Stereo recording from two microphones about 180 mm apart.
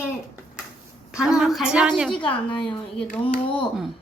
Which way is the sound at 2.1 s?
30° left (ahead or behind).